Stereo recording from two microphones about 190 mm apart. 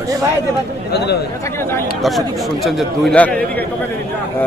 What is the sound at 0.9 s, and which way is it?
Speech, 60° left (ahead or behind).